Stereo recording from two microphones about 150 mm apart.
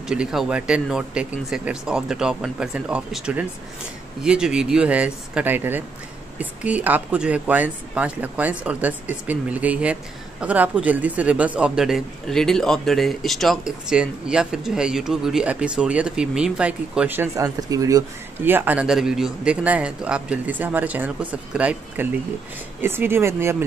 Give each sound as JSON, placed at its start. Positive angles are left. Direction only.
{"t": 0.1, "sound": "speech", "side_deg": -5}